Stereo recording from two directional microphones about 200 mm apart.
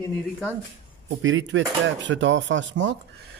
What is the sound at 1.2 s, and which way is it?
Speech, 70° right (ahead or behind).